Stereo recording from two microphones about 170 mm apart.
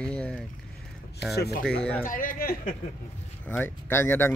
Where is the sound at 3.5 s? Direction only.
15° left (ahead or behind).